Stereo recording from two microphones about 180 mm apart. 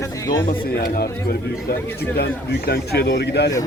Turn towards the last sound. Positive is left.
turn(degrees=65)  # may be behind; listen again after turning